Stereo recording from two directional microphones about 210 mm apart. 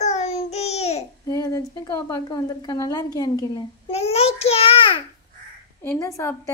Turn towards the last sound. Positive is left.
turn(degrees=15)  # may be behind; listen again after turning